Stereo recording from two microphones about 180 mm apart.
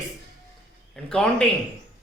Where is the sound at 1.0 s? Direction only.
5° left (ahead or behind).